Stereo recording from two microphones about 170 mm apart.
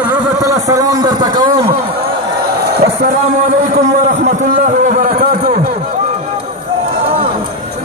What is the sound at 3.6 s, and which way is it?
A man's voice, 45° right (ahead or behind).